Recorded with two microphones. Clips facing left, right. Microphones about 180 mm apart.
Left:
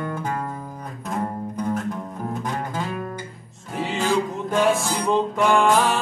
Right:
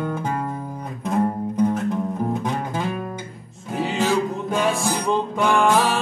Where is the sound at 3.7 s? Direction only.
Centre (ahead or behind).